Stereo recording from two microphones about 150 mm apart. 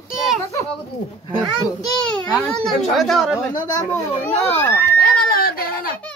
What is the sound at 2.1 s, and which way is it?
A child's voice, 5° left (ahead or behind).